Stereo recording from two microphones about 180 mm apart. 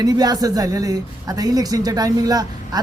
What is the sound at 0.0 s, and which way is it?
A man's voice, 20° right (ahead or behind).